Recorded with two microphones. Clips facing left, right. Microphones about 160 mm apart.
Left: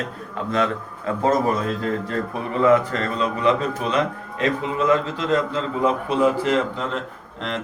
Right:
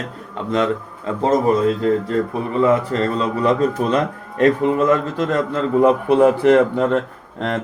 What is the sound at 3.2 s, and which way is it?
A man's voice, 45° right (ahead or behind).